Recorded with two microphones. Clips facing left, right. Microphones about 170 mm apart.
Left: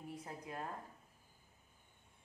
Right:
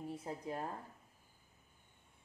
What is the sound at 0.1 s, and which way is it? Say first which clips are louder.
Speech: right 3 dB; 25° right (ahead or behind).